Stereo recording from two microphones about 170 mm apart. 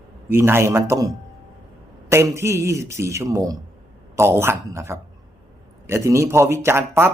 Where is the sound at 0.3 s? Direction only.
15° right (ahead or behind).